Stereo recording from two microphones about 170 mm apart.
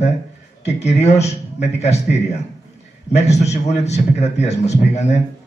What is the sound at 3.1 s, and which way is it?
A man's voice, 40° left (ahead or behind).